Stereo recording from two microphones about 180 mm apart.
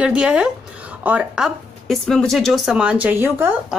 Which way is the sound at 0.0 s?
5° right (ahead or behind).